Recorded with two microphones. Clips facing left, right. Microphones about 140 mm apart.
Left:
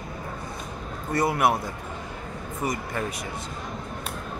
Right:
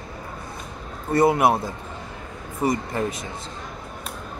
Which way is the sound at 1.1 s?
25° right (ahead or behind).